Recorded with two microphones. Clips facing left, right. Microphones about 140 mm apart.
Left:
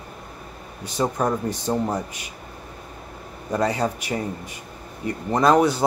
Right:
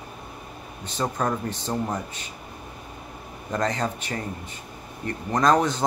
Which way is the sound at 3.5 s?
10° left (ahead or behind).